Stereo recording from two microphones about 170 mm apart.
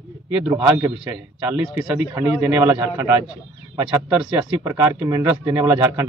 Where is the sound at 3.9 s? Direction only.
5° right (ahead or behind).